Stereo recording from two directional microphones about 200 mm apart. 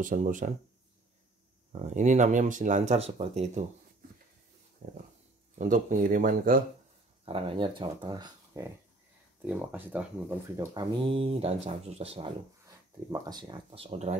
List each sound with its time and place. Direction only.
0.0 s speech: 40° right (ahead or behind)
1.7 s speech: 35° right (ahead or behind)
4.8 s a sound: 40° right (ahead or behind)
5.6 s speech: 40° right (ahead or behind)
7.2 s speech: 30° right (ahead or behind)
9.4 s speech: 10° right (ahead or behind)
10.7 s speech: 25° right (ahead or behind)
12.6 s speech: 20° right (ahead or behind)